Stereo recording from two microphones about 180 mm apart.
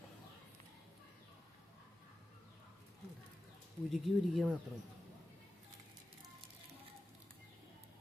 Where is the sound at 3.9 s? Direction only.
Centre (ahead or behind).